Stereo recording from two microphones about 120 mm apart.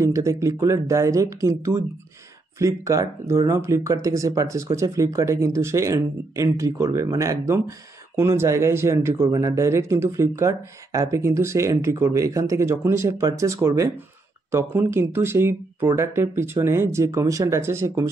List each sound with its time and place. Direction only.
0.0 s speech: 25° right (ahead or behind)